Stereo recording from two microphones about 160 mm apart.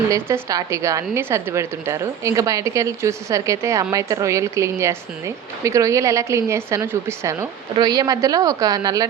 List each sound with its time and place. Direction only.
0.1 s a woman's voice: 20° right (ahead or behind)